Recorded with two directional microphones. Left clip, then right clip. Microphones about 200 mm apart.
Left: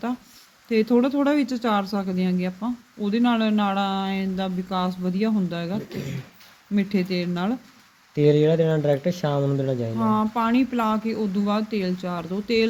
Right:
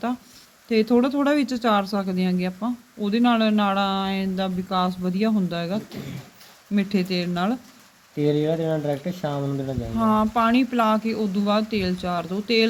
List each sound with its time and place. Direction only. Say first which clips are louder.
0.7 s speech: even; 5° right (ahead or behind)
8.1 s speech: left 4 dB; 55° left (ahead or behind)
10.0 s speech: right 4 dB; centre (ahead or behind)